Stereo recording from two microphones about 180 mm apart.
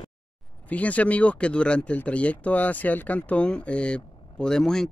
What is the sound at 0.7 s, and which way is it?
Speech, 10° left (ahead or behind).